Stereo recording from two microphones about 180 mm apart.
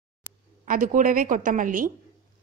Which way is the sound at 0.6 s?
50° right (ahead or behind).